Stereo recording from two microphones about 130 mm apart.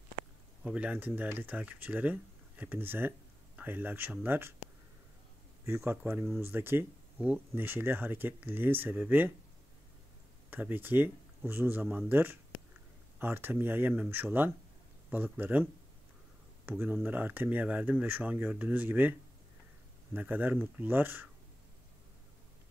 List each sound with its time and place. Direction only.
0.7 s speech: 10° right (ahead or behind)
5.7 s speech: 20° right (ahead or behind)
10.5 s speech: 15° right (ahead or behind)
16.8 s speech: 15° right (ahead or behind)
20.2 s speech: 15° right (ahead or behind)